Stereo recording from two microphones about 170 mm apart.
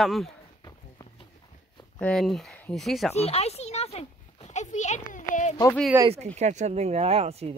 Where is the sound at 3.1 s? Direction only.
35° left (ahead or behind).